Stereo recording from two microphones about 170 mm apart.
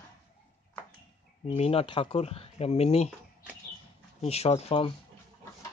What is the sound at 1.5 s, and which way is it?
Speech, 35° left (ahead or behind).